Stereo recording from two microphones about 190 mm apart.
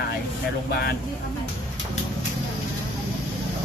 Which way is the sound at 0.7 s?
55° left (ahead or behind).